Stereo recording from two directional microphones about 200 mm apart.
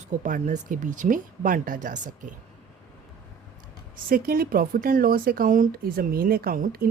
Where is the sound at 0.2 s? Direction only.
40° right (ahead or behind).